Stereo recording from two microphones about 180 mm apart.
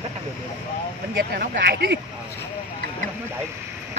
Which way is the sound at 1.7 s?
70° right (ahead or behind).